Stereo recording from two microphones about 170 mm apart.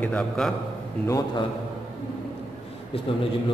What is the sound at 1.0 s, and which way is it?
Speech, 20° left (ahead or behind).